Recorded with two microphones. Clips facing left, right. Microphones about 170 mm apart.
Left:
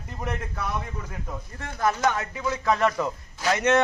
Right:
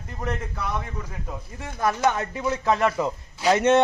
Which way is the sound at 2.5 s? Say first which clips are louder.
Right 1 dB; 20° right (ahead or behind).